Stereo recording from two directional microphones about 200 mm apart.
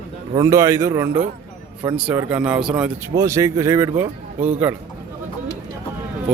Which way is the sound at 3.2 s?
15° right (ahead or behind).